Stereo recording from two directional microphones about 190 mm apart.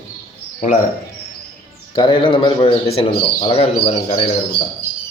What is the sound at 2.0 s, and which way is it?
A man's voice, 25° left (ahead or behind).